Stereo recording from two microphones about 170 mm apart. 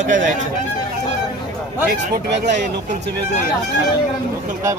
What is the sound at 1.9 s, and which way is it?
Speech, 75° right (ahead or behind).